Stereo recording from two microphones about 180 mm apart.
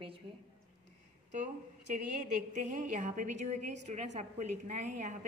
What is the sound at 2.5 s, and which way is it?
A woman's voice, 45° right (ahead or behind).